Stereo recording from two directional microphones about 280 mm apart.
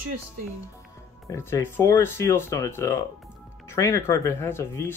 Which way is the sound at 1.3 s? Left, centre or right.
Centre.